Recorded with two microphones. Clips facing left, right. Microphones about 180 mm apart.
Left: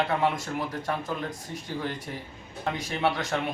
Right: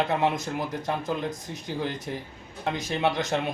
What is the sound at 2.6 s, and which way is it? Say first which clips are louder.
Speech: right 1 dB; 20° right (ahead or behind).